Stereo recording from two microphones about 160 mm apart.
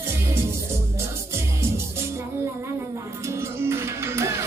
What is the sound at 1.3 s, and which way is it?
Music, 15° right (ahead or behind).